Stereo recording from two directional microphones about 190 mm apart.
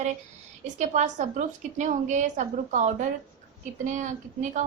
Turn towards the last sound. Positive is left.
turn(degrees=-40)  # may be behind; listen again after turning